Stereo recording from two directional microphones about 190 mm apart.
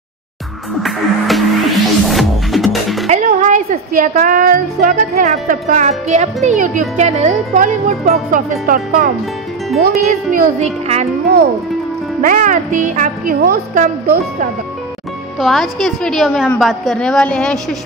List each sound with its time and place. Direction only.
0.8 s music: centre (ahead or behind)
3.1 s speech: 40° right (ahead or behind)
10.3 s speech: 35° right (ahead or behind)
12.2 s speech: 45° right (ahead or behind)
15.3 s a woman's voice: centre (ahead or behind)